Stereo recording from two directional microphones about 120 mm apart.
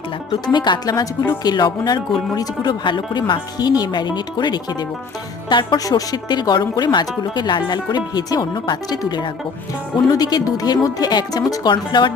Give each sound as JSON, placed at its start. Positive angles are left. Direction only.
{"t": 0.4, "sound": "speech", "side_deg": 40}